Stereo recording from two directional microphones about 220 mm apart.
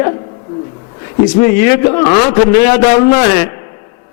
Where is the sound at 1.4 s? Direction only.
15° left (ahead or behind).